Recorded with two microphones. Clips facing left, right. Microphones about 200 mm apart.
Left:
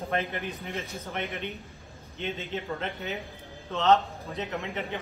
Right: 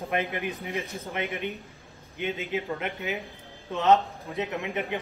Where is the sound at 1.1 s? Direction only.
15° right (ahead or behind).